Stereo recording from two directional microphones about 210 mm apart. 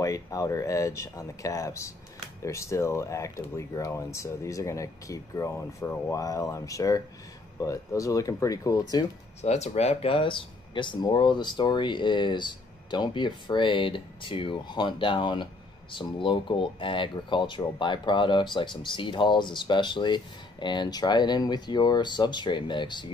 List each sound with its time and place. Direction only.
0.0 s speech: 15° left (ahead or behind)
9.4 s speech: 30° left (ahead or behind)